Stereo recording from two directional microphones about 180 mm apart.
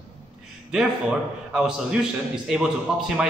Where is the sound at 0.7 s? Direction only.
5° right (ahead or behind).